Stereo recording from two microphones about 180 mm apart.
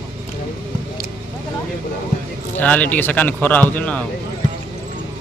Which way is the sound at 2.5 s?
10° left (ahead or behind).